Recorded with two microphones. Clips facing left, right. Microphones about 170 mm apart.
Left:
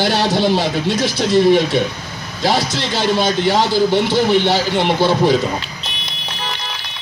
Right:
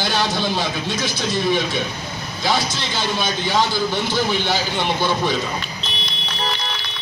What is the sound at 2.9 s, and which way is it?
A man's voice, 30° left (ahead or behind).